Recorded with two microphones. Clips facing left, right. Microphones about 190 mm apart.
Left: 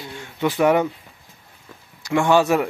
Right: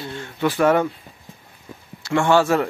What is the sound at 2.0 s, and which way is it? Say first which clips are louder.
Speech: even; 15° left (ahead or behind).